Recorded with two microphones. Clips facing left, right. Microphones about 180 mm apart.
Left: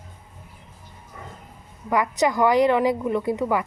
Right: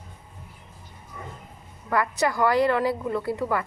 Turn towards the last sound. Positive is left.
turn(degrees=15)  # may be behind; listen again after turning